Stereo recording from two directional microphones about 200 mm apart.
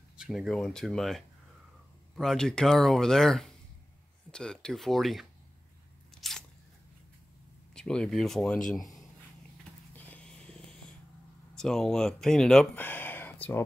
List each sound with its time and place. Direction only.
0.2 s speech: centre (ahead or behind)
6.2 s biting: centre (ahead or behind)
7.7 s speech: 5° left (ahead or behind)
9.9 s a sound: 10° left (ahead or behind)
11.5 s speech: centre (ahead or behind)